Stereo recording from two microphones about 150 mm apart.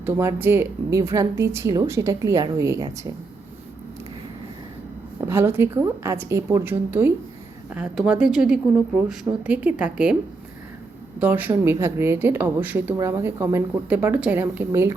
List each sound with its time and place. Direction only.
0.0 s speech: 15° right (ahead or behind)
5.3 s speech: 15° right (ahead or behind)
11.2 s speech: 10° right (ahead or behind)